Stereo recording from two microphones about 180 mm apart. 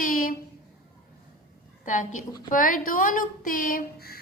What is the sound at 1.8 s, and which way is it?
A woman's voice, 45° left (ahead or behind).